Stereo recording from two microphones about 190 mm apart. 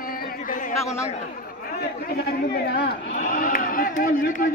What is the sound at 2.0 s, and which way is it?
Speech, 55° left (ahead or behind).